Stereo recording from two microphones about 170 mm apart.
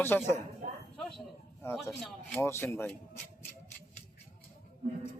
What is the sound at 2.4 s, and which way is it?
Speech, 15° left (ahead or behind).